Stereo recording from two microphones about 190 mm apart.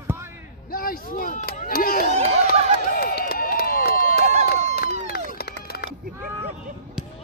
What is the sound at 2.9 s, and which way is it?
Run, 50° left (ahead or behind).